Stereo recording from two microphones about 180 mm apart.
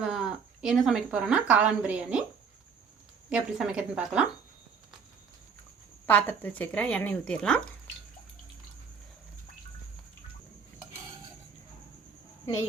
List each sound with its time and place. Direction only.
0.0 s speech: centre (ahead or behind)
3.2 s a woman's voice: 5° right (ahead or behind)
6.1 s speech: 10° left (ahead or behind)